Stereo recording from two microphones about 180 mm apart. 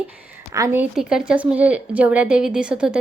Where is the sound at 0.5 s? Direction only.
15° right (ahead or behind).